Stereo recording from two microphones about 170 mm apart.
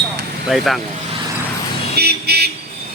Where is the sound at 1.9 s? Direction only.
70° right (ahead or behind).